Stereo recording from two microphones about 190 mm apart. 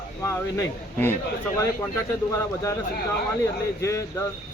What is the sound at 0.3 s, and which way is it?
Speech, 15° left (ahead or behind).